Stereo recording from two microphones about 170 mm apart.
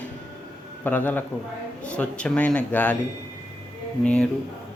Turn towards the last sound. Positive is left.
turn(degrees=5)  # may be behind; listen again after turning